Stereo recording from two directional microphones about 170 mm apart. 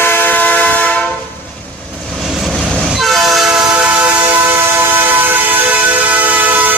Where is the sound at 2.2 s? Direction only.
Centre (ahead or behind).